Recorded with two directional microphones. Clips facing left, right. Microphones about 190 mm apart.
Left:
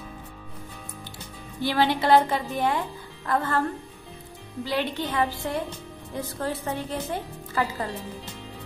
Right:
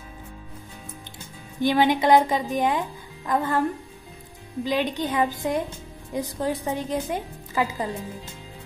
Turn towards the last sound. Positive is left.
turn(degrees=-15)  # may be behind; listen again after turning